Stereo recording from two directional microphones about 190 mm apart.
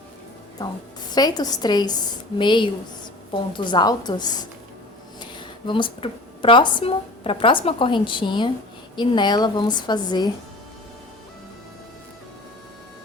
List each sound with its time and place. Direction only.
1.1 s a woman's voice: 20° left (ahead or behind)